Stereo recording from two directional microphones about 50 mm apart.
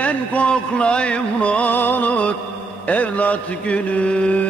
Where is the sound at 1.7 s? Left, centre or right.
Left.